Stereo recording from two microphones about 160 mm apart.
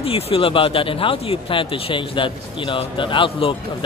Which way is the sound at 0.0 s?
35° left (ahead or behind).